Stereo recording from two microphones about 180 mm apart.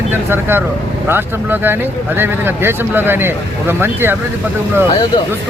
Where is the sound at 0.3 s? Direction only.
10° right (ahead or behind).